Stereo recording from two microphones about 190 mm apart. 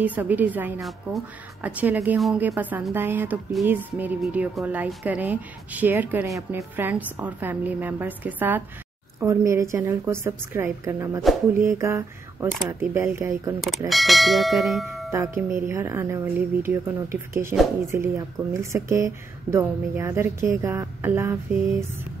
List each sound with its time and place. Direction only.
0.0 s speech: 10° right (ahead or behind)
13.8 s speech: centre (ahead or behind)
15.0 s speech: 15° right (ahead or behind)